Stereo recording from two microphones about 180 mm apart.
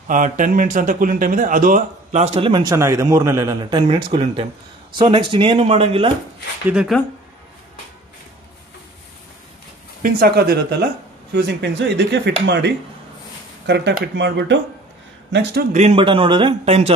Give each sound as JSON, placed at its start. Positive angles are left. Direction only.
{"t": 0.1, "sound": "a man's voice", "side_deg": -45}
{"t": 3.8, "sound": "a man's voice", "side_deg": -30}
{"t": 6.7, "sound": "speech", "side_deg": -5}
{"t": 10.0, "sound": "speech", "side_deg": -60}
{"t": 15.7, "sound": "a man's voice", "side_deg": -40}